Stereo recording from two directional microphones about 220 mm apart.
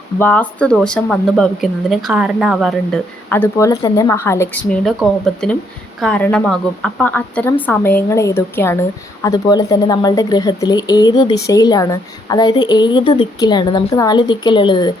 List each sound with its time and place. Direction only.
0.2 s a woman's voice: 5° left (ahead or behind)